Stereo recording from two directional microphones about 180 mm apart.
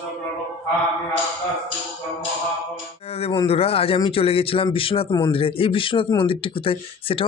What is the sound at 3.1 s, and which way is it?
A man's voice, 35° left (ahead or behind).